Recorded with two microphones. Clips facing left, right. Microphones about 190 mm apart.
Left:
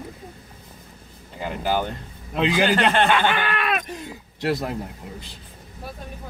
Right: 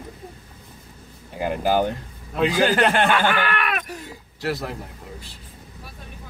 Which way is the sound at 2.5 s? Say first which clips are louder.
Even; 20° left (ahead or behind).